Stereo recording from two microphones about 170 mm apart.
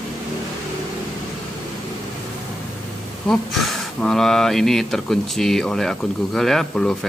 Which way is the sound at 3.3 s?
Centre (ahead or behind).